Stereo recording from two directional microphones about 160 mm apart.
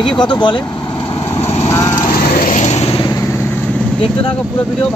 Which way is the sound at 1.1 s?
15° left (ahead or behind).